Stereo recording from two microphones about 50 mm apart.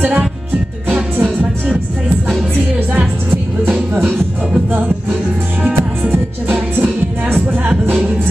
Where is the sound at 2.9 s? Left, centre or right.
Right.